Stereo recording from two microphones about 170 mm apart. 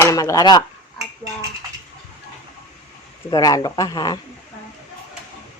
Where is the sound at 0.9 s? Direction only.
20° right (ahead or behind).